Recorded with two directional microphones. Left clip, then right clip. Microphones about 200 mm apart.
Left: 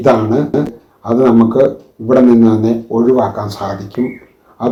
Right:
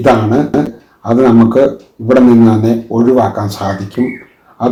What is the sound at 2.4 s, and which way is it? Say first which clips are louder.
Speech: right 1 dB; 25° left (ahead or behind).